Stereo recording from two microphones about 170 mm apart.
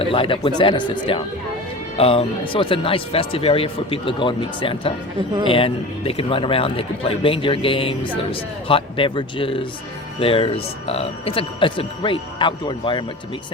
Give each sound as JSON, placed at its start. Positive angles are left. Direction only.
{"t": 0.0, "sound": "a man's voice", "side_deg": 30}